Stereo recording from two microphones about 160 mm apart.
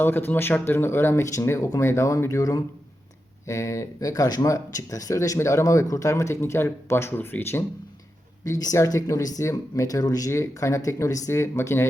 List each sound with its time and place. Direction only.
0.0 s speech: 15° left (ahead or behind)